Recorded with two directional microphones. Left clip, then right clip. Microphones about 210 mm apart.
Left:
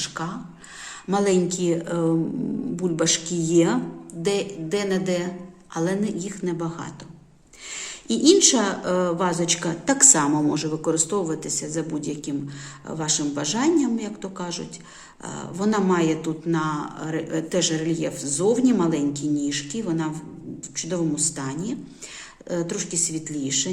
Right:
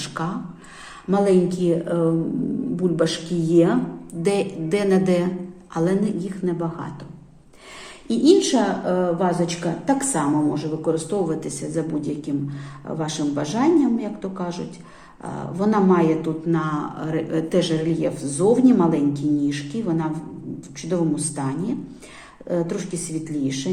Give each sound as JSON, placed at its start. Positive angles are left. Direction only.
{"t": 0.0, "sound": "a sound", "side_deg": 5}
{"t": 1.1, "sound": "speech", "side_deg": 20}
{"t": 4.2, "sound": "a woman's voice", "side_deg": 5}
{"t": 8.0, "sound": "speech", "side_deg": 25}